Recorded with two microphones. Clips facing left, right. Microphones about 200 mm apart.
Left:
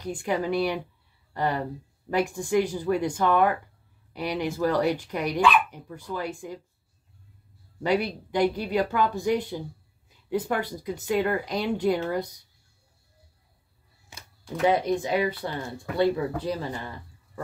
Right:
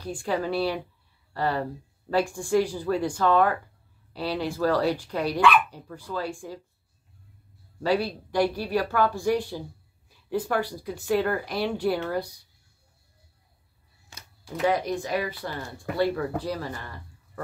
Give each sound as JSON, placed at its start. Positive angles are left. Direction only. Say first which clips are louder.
{"t": 0.0, "sound": "speech", "louder": "left 1 dB", "side_deg": 20}
{"t": 7.8, "sound": "speech", "louder": "even", "side_deg": 20}
{"t": 14.1, "sound": "camera", "louder": "left 1 dB", "side_deg": 20}
{"t": 14.7, "sound": "speech", "louder": "left 3 dB", "side_deg": 20}